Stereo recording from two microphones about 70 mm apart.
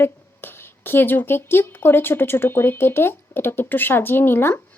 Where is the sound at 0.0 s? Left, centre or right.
Left.